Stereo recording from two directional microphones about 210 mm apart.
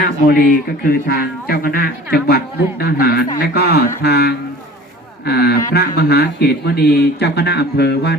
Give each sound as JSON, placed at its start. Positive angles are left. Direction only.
{"t": 0.0, "sound": "speech", "side_deg": 45}